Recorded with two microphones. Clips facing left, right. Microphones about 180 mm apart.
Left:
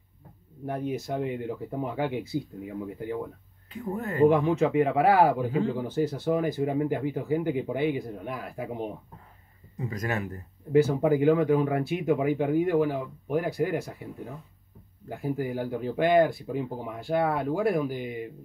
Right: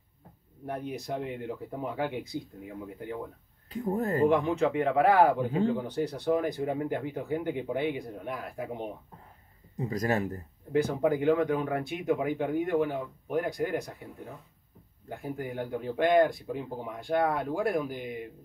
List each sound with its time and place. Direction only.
0.7 s speech: centre (ahead or behind)
3.7 s speech: 40° right (ahead or behind)
4.3 s speech: 5° left (ahead or behind)
9.8 s speech: 35° right (ahead or behind)
10.7 s speech: 5° left (ahead or behind)
15.0 s speech: 5° left (ahead or behind)